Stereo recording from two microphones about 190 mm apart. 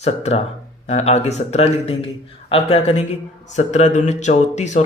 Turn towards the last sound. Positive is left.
turn(degrees=35)  # may be behind; listen again after turning